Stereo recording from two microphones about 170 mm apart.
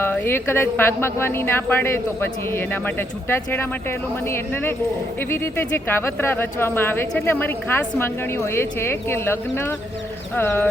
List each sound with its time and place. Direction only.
0.0 s speech: 15° left (ahead or behind)